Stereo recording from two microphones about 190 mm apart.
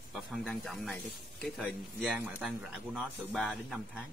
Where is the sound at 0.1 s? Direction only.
Centre (ahead or behind).